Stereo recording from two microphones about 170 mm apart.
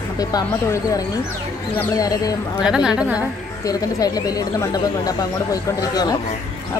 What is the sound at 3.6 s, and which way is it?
Speech, 20° left (ahead or behind).